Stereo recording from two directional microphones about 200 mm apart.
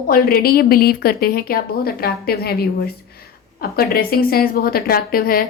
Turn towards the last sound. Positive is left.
turn(degrees=45)  # may be behind; listen again after turning